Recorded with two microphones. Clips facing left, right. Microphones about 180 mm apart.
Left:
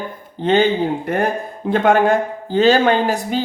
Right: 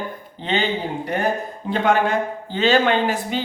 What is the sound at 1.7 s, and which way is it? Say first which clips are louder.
Speech: left 5 dB; 50° left (ahead or behind).